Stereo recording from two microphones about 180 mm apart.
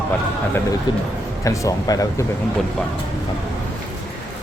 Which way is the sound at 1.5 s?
20° left (ahead or behind).